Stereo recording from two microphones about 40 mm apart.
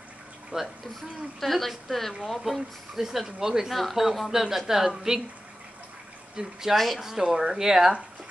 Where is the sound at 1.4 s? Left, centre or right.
Centre.